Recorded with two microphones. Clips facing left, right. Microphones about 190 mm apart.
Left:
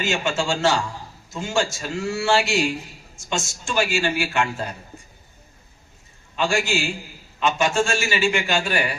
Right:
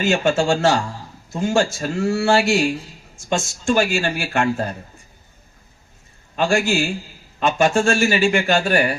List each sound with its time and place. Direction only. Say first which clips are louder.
0.0 s a man's voice: right 6 dB; 40° right (ahead or behind)
6.3 s a man's voice: right 4 dB; 40° right (ahead or behind)